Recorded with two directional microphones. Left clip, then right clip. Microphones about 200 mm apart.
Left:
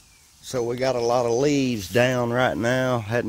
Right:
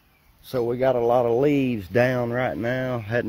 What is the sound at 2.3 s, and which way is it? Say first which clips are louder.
Speech: left 3 dB; 20° left (ahead or behind).